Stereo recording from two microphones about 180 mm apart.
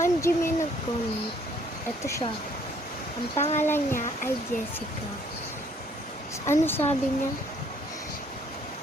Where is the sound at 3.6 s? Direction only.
15° left (ahead or behind).